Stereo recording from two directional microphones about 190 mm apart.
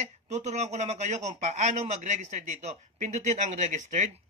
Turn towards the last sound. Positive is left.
turn(degrees=-40)  # may be behind; listen again after turning